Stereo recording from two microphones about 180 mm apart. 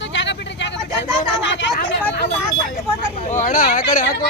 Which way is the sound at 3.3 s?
45° left (ahead or behind).